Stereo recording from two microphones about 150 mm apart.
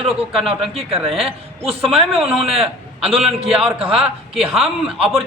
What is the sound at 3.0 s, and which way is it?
A man's voice, 40° right (ahead or behind).